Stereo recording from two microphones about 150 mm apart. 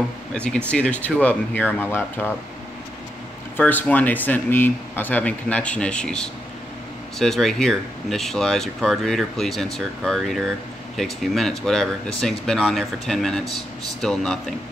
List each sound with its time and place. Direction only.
0.3 s speech: 5° left (ahead or behind)
3.5 s speech: 10° left (ahead or behind)